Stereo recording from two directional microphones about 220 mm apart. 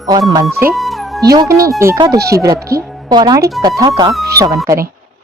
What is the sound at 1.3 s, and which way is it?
Speech, 15° right (ahead or behind).